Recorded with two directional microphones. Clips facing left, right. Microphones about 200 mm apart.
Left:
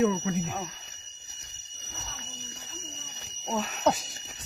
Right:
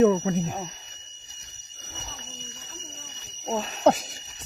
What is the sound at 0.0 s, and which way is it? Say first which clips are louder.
Speech: right 6 dB; 40° right (ahead or behind).